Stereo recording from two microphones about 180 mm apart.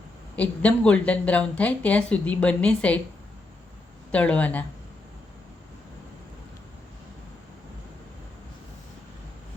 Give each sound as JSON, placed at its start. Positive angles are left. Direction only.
{"t": 0.3, "sound": "speech", "side_deg": 5}
{"t": 4.1, "sound": "speech", "side_deg": 5}